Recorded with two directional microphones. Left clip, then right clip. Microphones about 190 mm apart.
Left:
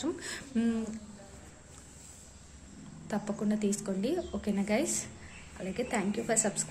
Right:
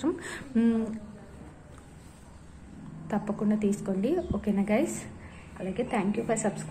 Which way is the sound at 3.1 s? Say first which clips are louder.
Right 4 dB; 20° left (ahead or behind).